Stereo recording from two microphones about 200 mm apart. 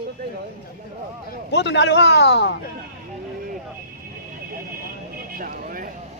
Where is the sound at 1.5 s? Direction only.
60° left (ahead or behind).